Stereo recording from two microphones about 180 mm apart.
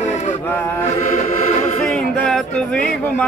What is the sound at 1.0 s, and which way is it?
Music, 45° left (ahead or behind).